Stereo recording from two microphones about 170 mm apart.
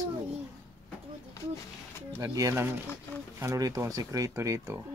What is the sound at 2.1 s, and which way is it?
Speech, 20° right (ahead or behind).